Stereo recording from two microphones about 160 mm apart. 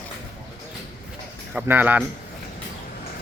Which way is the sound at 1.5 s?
10° right (ahead or behind).